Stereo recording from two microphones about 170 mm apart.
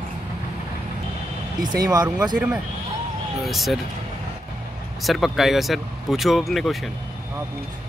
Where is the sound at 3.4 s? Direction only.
Centre (ahead or behind).